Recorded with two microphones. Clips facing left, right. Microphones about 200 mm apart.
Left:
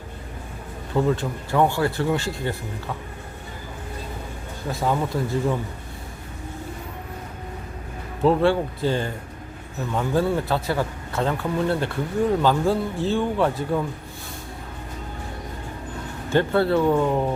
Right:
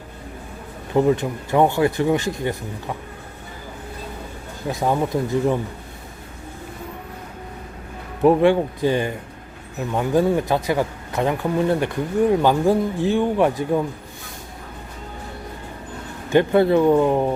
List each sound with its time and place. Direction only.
0.9 s speech: 20° right (ahead or behind)
4.7 s speech: 20° right (ahead or behind)
8.2 s speech: 15° right (ahead or behind)
16.3 s speech: 15° right (ahead or behind)